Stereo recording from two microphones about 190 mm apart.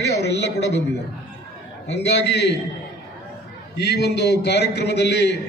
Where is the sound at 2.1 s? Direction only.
60° left (ahead or behind).